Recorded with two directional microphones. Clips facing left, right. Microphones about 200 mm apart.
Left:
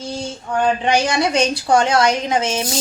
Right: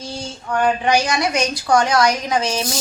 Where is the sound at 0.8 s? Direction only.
25° left (ahead or behind).